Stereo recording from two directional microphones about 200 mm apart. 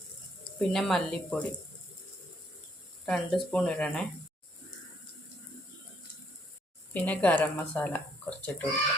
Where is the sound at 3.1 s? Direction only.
5° left (ahead or behind).